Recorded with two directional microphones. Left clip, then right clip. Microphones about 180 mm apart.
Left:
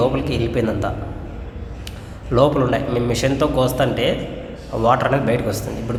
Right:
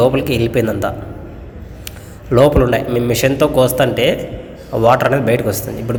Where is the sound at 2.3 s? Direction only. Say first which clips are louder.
Right 5 dB; 15° right (ahead or behind).